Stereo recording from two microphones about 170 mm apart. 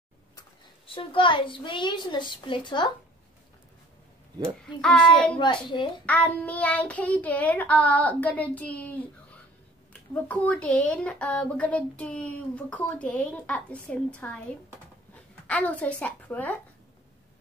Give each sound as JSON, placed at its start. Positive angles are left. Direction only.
{"t": 0.4, "sound": "a child's voice", "side_deg": 30}
{"t": 4.8, "sound": "a child's voice", "side_deg": 5}
{"t": 15.4, "sound": "speech", "side_deg": 10}